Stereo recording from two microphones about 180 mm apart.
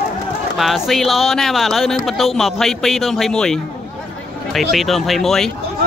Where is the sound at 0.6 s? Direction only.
Centre (ahead or behind).